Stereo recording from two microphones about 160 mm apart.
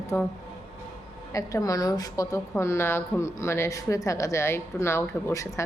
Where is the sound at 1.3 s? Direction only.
20° left (ahead or behind).